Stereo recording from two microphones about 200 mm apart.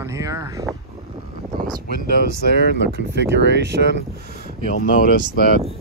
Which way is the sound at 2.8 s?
60° right (ahead or behind).